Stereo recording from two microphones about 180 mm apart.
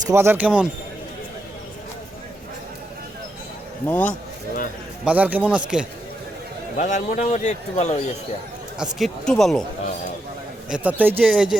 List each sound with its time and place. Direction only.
0.1 s speech: 15° right (ahead or behind)
3.8 s a man's voice: 10° left (ahead or behind)
5.0 s speech: 10° right (ahead or behind)
6.7 s a man's voice: 45° left (ahead or behind)
8.8 s speech: centre (ahead or behind)
10.7 s speech: 10° right (ahead or behind)